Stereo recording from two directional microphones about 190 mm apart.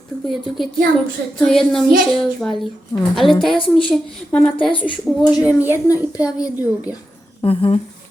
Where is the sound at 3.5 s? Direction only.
25° left (ahead or behind).